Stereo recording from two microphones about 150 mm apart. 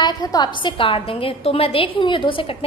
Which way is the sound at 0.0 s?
25° left (ahead or behind).